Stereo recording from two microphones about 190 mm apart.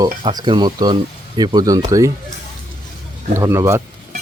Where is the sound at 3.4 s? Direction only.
15° right (ahead or behind).